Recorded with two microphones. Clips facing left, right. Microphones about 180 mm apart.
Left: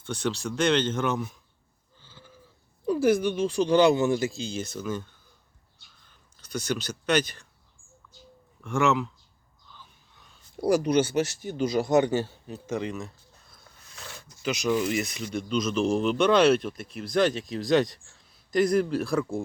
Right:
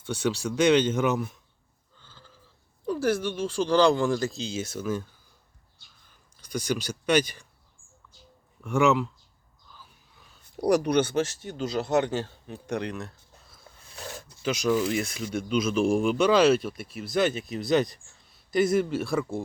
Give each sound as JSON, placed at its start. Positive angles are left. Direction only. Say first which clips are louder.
{"t": 0.0, "sound": "speech", "louder": "right 2 dB", "side_deg": -10}
{"t": 2.0, "sound": "goat", "louder": "left 2 dB", "side_deg": 10}
{"t": 2.8, "sound": "speech", "louder": "left 4 dB", "side_deg": 10}
{"t": 4.3, "sound": "speech", "louder": "right 1 dB", "side_deg": 0}
{"t": 8.6, "sound": "speech", "louder": "right 2 dB", "side_deg": -5}
{"t": 9.7, "sound": "a sound", "louder": "even", "side_deg": -5}
{"t": 10.7, "sound": "speech", "louder": "even", "side_deg": -60}
{"t": 11.3, "sound": "speech", "louder": "left 4 dB", "side_deg": 10}
{"t": 12.6, "sound": "a sound", "louder": "even", "side_deg": 0}
{"t": 13.9, "sound": "a sound", "louder": "right 6 dB", "side_deg": -40}
{"t": 14.7, "sound": "speech", "louder": "right 1 dB", "side_deg": 5}
{"t": 15.2, "sound": "speech", "louder": "right 1 dB", "side_deg": -5}